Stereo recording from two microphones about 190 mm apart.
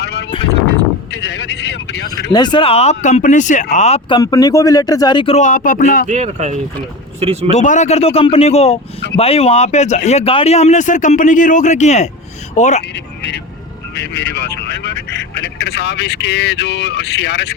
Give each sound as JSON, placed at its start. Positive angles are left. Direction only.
{"t": 0.0, "sound": "a sound", "side_deg": 60}
{"t": 1.1, "sound": "speech", "side_deg": 65}
{"t": 2.3, "sound": "speech", "side_deg": 25}
{"t": 4.2, "sound": "speech", "side_deg": 20}
{"t": 6.1, "sound": "speech", "side_deg": -40}
{"t": 7.5, "sound": "speech", "side_deg": 40}
{"t": 13.9, "sound": "speech", "side_deg": 65}